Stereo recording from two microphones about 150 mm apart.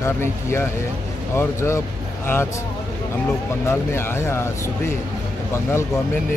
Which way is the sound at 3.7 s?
15° left (ahead or behind).